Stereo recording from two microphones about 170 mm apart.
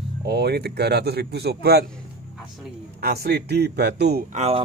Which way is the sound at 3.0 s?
65° right (ahead or behind).